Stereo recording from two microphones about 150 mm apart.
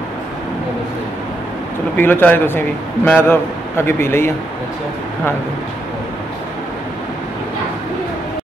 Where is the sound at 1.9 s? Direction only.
15° left (ahead or behind).